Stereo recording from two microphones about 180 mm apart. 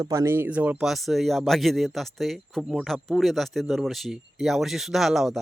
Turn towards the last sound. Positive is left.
turn(degrees=0)  # may be behind; listen again after turning